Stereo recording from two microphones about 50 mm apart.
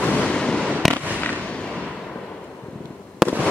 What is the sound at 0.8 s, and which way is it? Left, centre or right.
Fireworks, centre.